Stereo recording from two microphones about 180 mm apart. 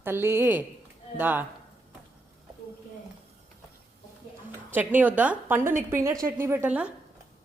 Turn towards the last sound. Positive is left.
turn(degrees=-5)  # may be behind; listen again after turning